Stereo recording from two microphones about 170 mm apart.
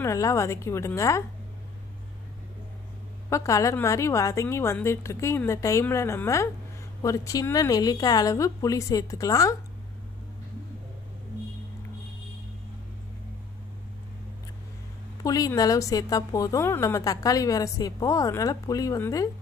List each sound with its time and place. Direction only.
0.0 s a woman's voice: 15° left (ahead or behind)
3.3 s a woman's voice: 15° left (ahead or behind)
15.2 s a woman's voice: 20° left (ahead or behind)